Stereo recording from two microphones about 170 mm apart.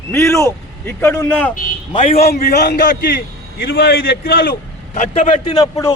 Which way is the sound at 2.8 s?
60° left (ahead or behind).